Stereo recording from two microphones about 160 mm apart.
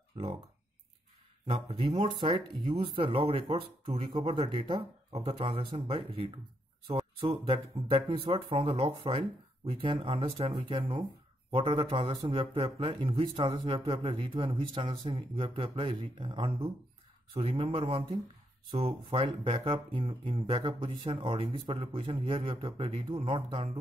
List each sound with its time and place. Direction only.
1.5 s a man's voice: 35° right (ahead or behind)
4.4 s a man's voice: 30° right (ahead or behind)